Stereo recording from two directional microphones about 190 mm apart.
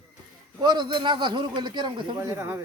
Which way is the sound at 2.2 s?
15° right (ahead or behind).